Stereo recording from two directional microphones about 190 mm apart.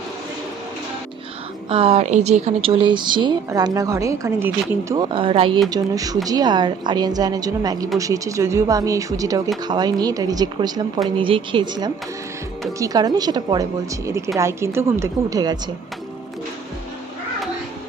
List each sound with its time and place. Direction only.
1.7 s speech: 30° right (ahead or behind)